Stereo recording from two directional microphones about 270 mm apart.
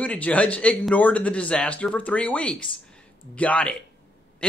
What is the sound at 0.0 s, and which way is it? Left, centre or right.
Speech, centre.